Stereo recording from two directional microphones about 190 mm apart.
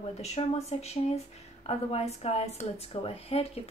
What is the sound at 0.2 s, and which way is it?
Speech, 35° left (ahead or behind).